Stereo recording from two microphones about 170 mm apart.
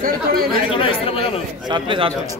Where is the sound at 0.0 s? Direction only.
60° right (ahead or behind).